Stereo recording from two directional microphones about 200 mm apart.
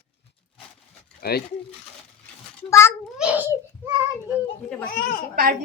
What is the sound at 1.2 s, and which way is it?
Speech, 50° left (ahead or behind).